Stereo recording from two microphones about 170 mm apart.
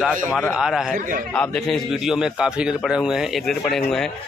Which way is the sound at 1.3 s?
5° left (ahead or behind).